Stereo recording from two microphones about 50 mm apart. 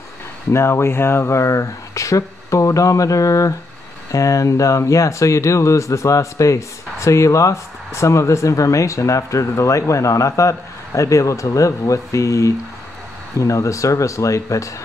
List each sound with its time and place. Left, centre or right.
0.5 s speech: left